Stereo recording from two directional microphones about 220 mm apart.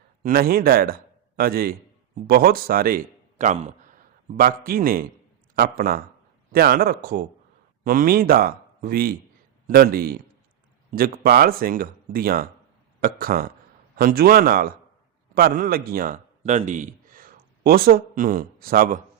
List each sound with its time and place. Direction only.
0.2 s a man's voice: 40° right (ahead or behind)